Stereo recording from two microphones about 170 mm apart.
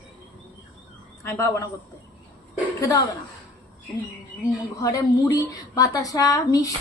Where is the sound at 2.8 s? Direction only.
20° left (ahead or behind).